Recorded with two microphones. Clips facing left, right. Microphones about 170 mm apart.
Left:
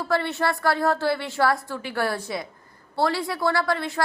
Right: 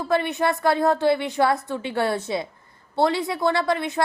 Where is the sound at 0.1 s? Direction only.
15° right (ahead or behind).